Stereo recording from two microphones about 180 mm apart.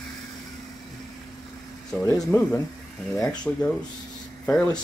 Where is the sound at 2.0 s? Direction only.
15° left (ahead or behind).